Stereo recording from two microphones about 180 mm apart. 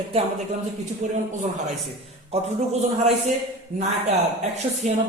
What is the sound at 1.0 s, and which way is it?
Speech, 40° right (ahead or behind).